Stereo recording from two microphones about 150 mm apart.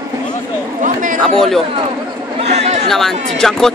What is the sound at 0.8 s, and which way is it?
Chatter, 60° right (ahead or behind).